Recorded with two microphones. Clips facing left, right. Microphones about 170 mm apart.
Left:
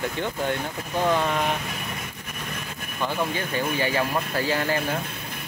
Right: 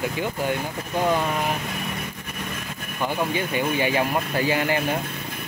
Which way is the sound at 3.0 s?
15° right (ahead or behind).